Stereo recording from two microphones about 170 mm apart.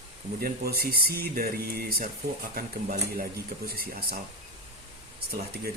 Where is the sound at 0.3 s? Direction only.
65° right (ahead or behind).